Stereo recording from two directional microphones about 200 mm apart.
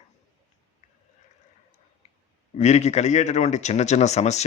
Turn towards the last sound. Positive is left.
turn(degrees=35)  # may be behind; listen again after turning